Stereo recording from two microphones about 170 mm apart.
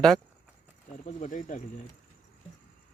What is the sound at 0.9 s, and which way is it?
Speech, 45° left (ahead or behind).